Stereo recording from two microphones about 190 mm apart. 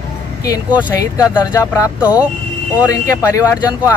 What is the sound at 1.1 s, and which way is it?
Speech, 15° left (ahead or behind).